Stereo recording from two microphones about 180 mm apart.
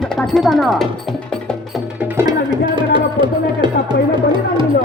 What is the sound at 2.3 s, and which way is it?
Music, 25° right (ahead or behind).